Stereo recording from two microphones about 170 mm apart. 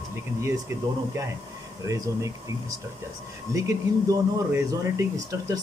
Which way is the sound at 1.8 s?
20° right (ahead or behind).